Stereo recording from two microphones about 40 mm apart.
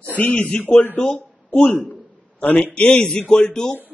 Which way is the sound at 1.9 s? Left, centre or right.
Left.